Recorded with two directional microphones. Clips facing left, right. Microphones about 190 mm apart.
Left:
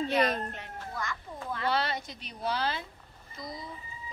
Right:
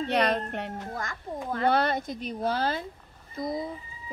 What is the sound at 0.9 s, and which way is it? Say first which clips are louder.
Speech: right 3 dB; 45° right (ahead or behind).